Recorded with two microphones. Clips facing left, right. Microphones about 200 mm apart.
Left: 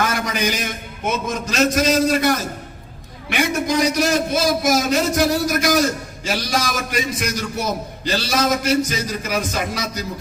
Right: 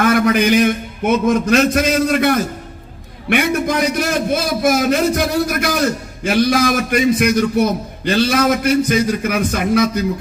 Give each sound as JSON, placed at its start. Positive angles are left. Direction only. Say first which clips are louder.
{"t": 0.0, "sound": "a man's voice", "louder": "right 8 dB", "side_deg": -55}